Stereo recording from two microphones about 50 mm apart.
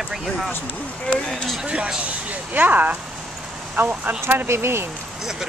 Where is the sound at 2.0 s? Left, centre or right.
Right.